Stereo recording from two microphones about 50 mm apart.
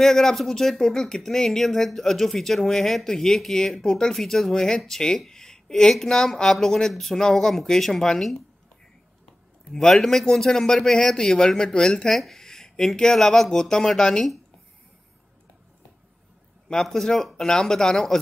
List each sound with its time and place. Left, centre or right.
0.0 s speech: centre
9.8 s speech: centre
12.1 s speech: centre
16.8 s speech: centre